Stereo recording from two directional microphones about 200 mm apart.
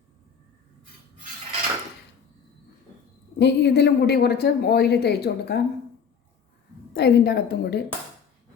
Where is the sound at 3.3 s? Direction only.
60° left (ahead or behind).